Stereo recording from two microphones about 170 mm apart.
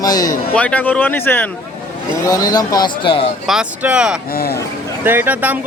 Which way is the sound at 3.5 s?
5° right (ahead or behind).